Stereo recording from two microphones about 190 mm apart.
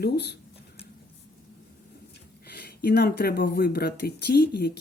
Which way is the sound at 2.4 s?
55° left (ahead or behind).